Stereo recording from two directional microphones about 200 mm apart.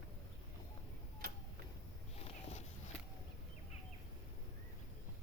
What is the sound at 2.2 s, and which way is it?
Cat, 30° left (ahead or behind).